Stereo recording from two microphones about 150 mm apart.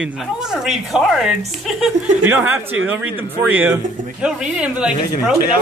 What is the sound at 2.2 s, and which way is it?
Speech, 15° right (ahead or behind).